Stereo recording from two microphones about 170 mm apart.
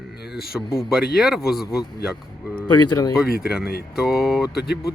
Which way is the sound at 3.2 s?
65° left (ahead or behind).